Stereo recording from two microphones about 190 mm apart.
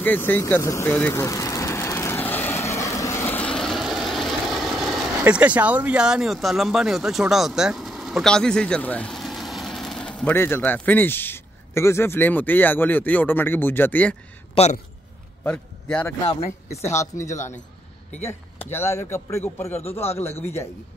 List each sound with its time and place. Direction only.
0.0 s speech: 10° left (ahead or behind)
14.5 s a man's voice: 35° left (ahead or behind)
15.4 s a man's voice: 5° left (ahead or behind)
16.3 s speech: 35° left (ahead or behind)
16.9 s a man's voice: 15° left (ahead or behind)